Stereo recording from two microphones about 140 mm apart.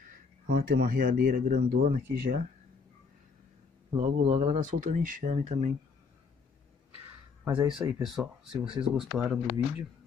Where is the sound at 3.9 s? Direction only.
55° right (ahead or behind).